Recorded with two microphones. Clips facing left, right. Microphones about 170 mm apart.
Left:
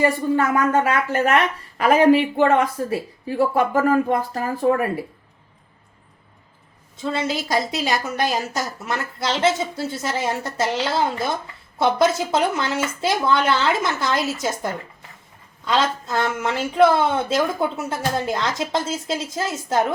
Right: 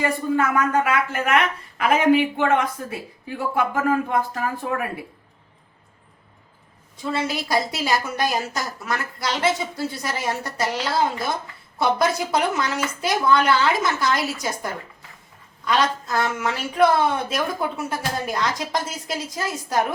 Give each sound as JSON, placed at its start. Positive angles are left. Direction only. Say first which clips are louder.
{"t": 0.0, "sound": "speech", "louder": "left 3 dB", "side_deg": 40}
{"t": 6.9, "sound": "speech", "louder": "left 1 dB", "side_deg": 25}